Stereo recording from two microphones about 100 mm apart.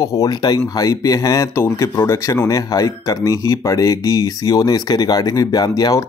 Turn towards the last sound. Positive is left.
turn(degrees=40)  # may be behind; listen again after turning